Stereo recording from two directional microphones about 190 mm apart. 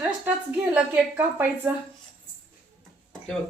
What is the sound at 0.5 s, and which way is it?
A woman's voice, 5° right (ahead or behind).